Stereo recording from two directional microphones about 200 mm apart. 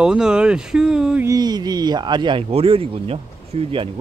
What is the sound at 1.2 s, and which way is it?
Speech, 20° right (ahead or behind).